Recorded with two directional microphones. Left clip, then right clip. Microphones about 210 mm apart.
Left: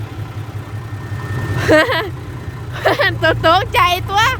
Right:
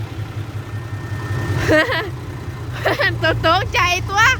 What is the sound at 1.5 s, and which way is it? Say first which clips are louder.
Vehicle: left 4 dB; 15° left (ahead or behind).